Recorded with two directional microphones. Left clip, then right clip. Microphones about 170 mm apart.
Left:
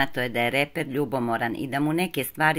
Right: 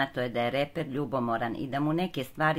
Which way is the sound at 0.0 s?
15° left (ahead or behind).